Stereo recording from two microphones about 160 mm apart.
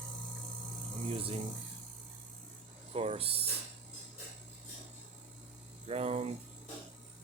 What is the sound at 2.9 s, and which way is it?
Speech, 40° right (ahead or behind).